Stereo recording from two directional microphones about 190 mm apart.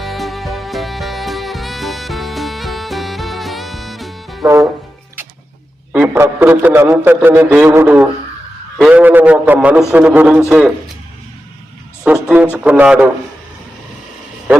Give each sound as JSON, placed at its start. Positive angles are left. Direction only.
{"t": 0.0, "sound": "music", "side_deg": 0}
{"t": 4.4, "sound": "a man's voice", "side_deg": -20}
{"t": 5.9, "sound": "a man's voice", "side_deg": -10}
{"t": 12.0, "sound": "music", "side_deg": -5}
{"t": 12.6, "sound": "a man's voice", "side_deg": -5}